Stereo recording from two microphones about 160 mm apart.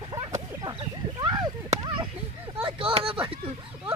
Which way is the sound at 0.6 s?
30° right (ahead or behind).